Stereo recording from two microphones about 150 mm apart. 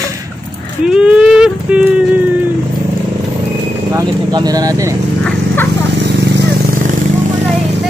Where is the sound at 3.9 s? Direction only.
25° right (ahead or behind).